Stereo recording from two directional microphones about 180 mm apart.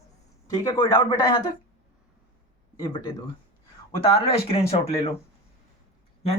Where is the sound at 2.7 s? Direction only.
25° left (ahead or behind).